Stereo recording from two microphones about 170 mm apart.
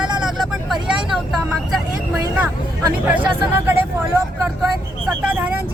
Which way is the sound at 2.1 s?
15° right (ahead or behind).